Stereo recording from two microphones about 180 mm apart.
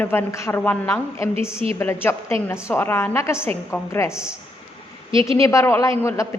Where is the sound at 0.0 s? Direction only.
10° left (ahead or behind).